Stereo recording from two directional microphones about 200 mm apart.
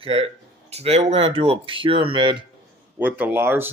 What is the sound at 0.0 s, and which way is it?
Speech, 30° right (ahead or behind).